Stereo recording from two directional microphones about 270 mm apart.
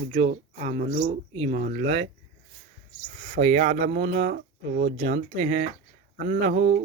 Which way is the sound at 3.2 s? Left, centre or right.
Right.